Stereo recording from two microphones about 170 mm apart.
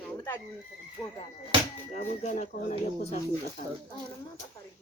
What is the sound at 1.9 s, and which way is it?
Speech, 45° left (ahead or behind).